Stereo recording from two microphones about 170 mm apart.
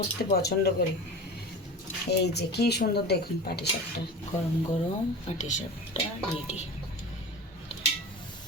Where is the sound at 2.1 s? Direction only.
75° left (ahead or behind).